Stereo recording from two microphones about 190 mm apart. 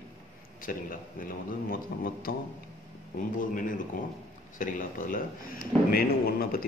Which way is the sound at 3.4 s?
45° left (ahead or behind).